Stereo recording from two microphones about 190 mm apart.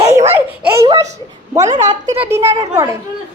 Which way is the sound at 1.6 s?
40° right (ahead or behind).